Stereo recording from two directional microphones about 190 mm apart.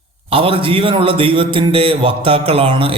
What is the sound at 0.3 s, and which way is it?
A man's voice, 30° right (ahead or behind).